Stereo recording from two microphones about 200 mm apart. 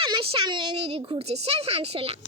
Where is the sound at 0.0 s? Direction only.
25° right (ahead or behind).